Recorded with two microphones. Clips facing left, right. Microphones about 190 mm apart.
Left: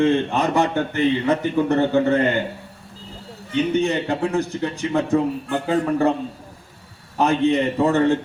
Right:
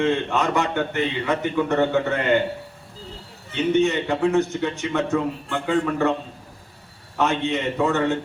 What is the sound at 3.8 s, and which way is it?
A man's voice, 35° left (ahead or behind).